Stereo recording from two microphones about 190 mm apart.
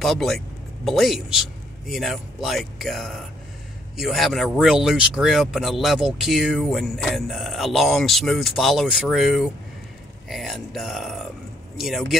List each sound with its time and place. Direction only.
0.0 s speech: centre (ahead or behind)